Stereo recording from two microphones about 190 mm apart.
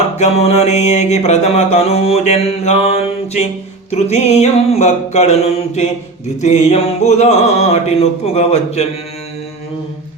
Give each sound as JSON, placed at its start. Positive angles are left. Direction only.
{"t": 0.2, "sound": "mantra", "side_deg": 35}